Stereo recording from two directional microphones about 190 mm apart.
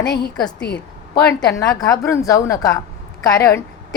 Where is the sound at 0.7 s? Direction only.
60° left (ahead or behind).